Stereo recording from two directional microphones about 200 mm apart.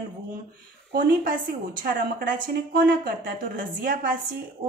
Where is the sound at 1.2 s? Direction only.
45° right (ahead or behind).